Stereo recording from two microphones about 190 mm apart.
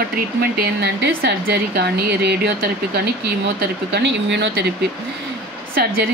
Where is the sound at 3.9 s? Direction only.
70° right (ahead or behind).